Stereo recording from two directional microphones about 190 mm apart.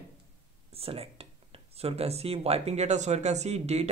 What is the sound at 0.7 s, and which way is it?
Speech, 30° right (ahead or behind).